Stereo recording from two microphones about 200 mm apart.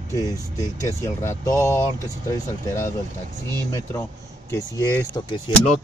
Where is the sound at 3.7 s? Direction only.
10° left (ahead or behind).